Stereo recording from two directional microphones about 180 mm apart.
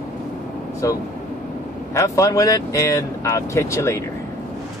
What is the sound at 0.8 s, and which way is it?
Speech, 15° left (ahead or behind).